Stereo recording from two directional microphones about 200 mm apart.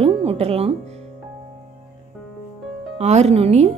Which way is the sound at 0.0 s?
30° right (ahead or behind).